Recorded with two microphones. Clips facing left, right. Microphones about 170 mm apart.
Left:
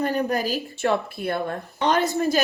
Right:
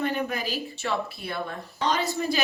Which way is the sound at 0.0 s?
40° left (ahead or behind).